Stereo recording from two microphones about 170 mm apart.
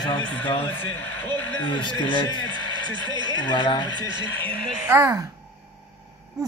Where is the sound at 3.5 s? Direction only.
25° left (ahead or behind).